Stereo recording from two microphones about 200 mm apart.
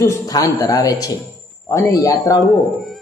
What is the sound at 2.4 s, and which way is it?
Speech, centre (ahead or behind).